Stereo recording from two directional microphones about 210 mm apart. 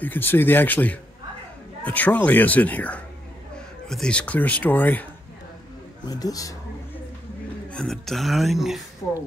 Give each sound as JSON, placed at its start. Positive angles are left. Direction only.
{"t": 0.0, "sound": "speech", "side_deg": 10}
{"t": 6.0, "sound": "speech", "side_deg": 15}
{"t": 7.7, "sound": "speech", "side_deg": 0}